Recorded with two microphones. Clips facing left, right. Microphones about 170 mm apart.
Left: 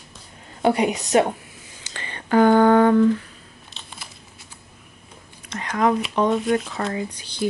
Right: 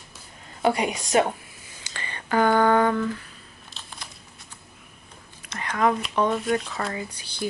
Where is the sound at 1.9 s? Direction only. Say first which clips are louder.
Left 5 dB; 15° left (ahead or behind).